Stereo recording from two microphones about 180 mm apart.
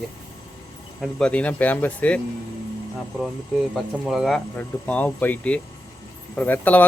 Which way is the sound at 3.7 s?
5° right (ahead or behind).